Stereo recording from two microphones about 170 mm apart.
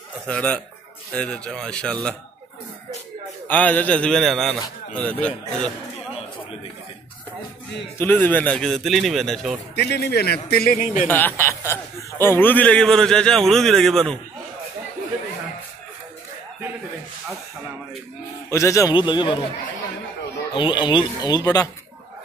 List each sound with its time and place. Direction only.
0.3 s a man's voice: 5° left (ahead or behind)
3.4 s a man's voice: 10° left (ahead or behind)
8.0 s a man's voice: 10° left (ahead or behind)
9.8 s a man's voice: 70° left (ahead or behind); by 11.1 s 55° left (ahead or behind)
11.1 s a man's voice: 10° left (ahead or behind)
18.5 s speech: 15° left (ahead or behind)
20.5 s speech: 30° left (ahead or behind)